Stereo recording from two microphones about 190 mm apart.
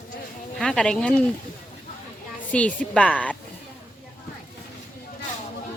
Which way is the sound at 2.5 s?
5° left (ahead or behind).